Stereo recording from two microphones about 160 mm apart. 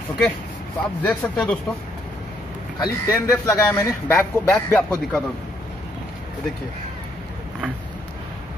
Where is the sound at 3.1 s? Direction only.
20° left (ahead or behind).